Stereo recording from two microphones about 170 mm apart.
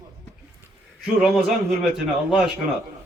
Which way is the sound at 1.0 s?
Centre (ahead or behind).